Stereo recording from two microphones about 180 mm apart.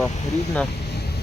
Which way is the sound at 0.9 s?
65° left (ahead or behind).